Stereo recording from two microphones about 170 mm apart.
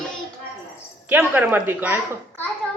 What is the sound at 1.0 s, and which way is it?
Speech, 10° right (ahead or behind).